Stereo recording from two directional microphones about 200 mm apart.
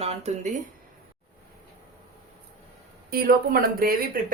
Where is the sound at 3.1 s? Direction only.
50° right (ahead or behind).